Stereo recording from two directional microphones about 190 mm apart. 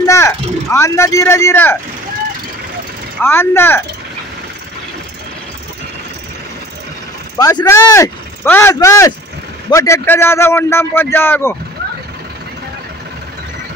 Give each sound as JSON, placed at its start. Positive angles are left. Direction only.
{"t": 0.0, "sound": "speech", "side_deg": 15}
{"t": 3.2, "sound": "a man's voice", "side_deg": 10}
{"t": 7.3, "sound": "a man's voice", "side_deg": 20}